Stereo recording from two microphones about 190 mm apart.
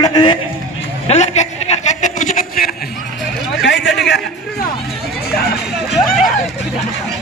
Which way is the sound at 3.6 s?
70° left (ahead or behind).